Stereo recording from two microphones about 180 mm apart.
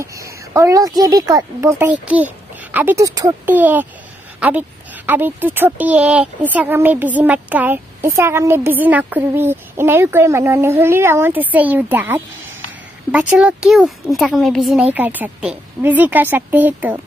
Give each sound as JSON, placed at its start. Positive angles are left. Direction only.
{"t": 0.0, "sound": "a woman's voice", "side_deg": -15}